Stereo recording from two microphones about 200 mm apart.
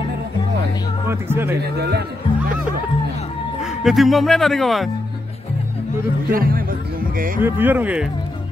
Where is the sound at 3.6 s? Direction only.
Centre (ahead or behind).